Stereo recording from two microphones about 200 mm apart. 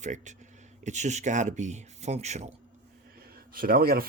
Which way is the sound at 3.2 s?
50° right (ahead or behind).